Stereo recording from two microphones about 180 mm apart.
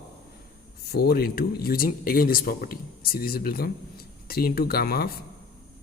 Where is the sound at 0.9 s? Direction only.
60° left (ahead or behind).